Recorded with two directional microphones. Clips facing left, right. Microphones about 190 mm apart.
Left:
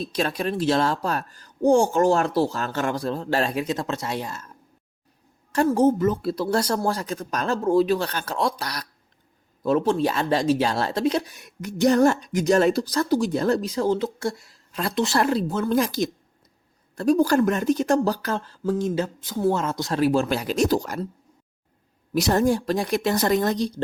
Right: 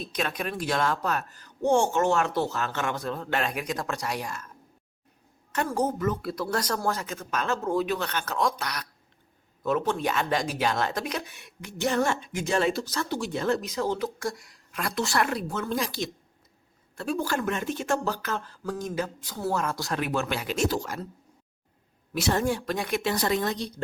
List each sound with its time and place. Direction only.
0.0 s speech: 30° left (ahead or behind)
15.7 s a woman's voice: 45° left (ahead or behind); by 20.0 s 20° left (ahead or behind)
20.0 s speech: 35° left (ahead or behind)
22.1 s speech: 40° left (ahead or behind)